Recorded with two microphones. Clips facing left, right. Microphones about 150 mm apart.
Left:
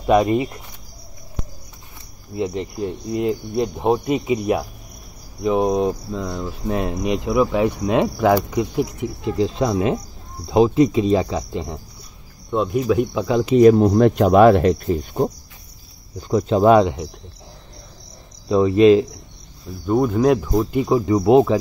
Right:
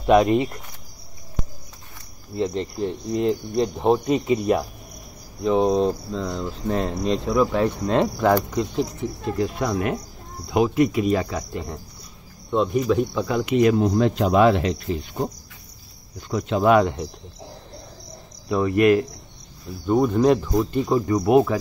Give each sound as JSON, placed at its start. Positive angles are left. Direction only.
{"t": 0.0, "sound": "speech", "side_deg": 0}
{"t": 2.3, "sound": "speech", "side_deg": 10}
{"t": 12.4, "sound": "speech", "side_deg": 0}
{"t": 13.2, "sound": "speech", "side_deg": 20}
{"t": 13.5, "sound": "speech", "side_deg": 40}
{"t": 13.8, "sound": "speech", "side_deg": 55}
{"t": 16.2, "sound": "speech", "side_deg": 35}
{"t": 16.8, "sound": "speech", "side_deg": 10}
{"t": 18.5, "sound": "speech", "side_deg": 20}
{"t": 19.9, "sound": "speech", "side_deg": 0}
{"t": 21.2, "sound": "speech", "side_deg": 25}